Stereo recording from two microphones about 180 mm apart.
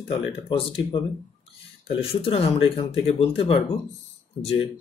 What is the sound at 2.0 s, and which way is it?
Speech, 30° left (ahead or behind).